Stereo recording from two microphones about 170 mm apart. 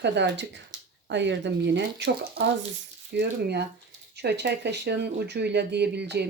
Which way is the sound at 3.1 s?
80° right.